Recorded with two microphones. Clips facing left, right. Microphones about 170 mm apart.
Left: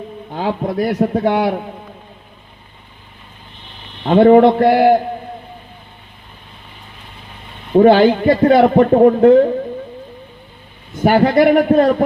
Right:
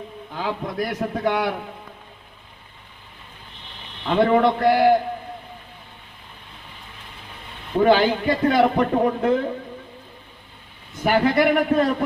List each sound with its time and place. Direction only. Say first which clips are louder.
0.3 s a man's voice: left 8 dB; 35° left (ahead or behind)
4.0 s a man's voice: left 9 dB; 40° left (ahead or behind)
4.6 s a man's voice: left 5 dB; 50° left (ahead or behind)
7.8 s a man's voice: left 8 dB; 45° left (ahead or behind)
11.0 s a man's voice: left 7 dB; 45° left (ahead or behind)